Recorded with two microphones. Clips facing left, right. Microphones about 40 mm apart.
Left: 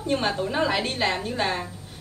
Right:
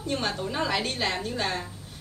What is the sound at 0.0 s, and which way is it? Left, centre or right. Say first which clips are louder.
A woman's voice: left 4 dB; centre.